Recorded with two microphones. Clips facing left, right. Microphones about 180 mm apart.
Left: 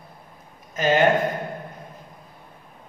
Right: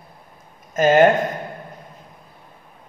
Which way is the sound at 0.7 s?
45° right (ahead or behind).